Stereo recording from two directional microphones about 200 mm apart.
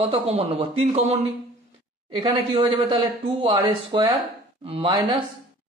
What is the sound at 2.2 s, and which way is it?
Speech, 25° right (ahead or behind).